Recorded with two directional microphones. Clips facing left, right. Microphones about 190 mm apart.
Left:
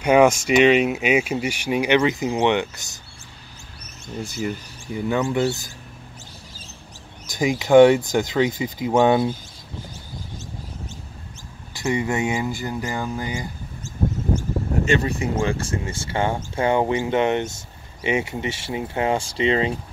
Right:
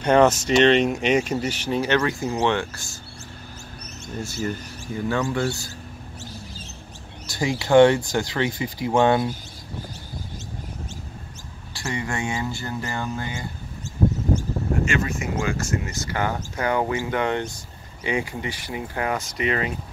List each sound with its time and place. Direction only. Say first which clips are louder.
0.0 s speech: left 2 dB; 10° left (ahead or behind)
4.2 s speech: left 1 dB; 15° left (ahead or behind)
7.2 s speech: left 3 dB; 15° left (ahead or behind)
11.7 s speech: left 6 dB; 20° left (ahead or behind)
14.9 s speech: left 4 dB; 35° left (ahead or behind)